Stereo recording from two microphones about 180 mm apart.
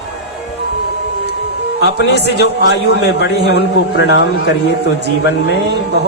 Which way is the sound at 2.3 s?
70° left (ahead or behind).